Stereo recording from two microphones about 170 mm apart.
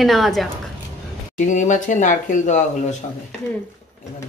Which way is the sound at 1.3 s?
45° left (ahead or behind).